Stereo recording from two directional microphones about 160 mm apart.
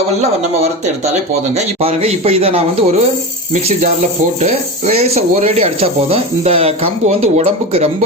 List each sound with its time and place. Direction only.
0.2 s speech: 40° right (ahead or behind)